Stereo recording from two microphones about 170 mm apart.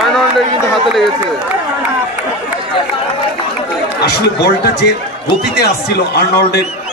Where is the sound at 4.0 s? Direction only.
70° left (ahead or behind).